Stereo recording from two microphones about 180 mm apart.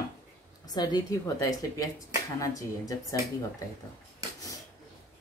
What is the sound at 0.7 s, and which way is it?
A woman's voice, 20° left (ahead or behind).